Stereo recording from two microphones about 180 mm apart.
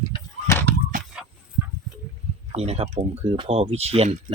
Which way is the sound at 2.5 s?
35° right (ahead or behind).